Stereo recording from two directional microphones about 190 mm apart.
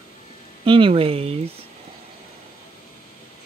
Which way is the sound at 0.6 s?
25° right (ahead or behind).